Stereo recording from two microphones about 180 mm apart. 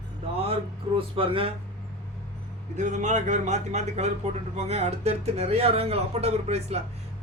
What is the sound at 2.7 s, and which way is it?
Speech, 40° right (ahead or behind).